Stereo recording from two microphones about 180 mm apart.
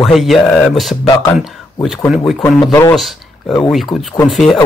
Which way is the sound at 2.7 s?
15° left (ahead or behind).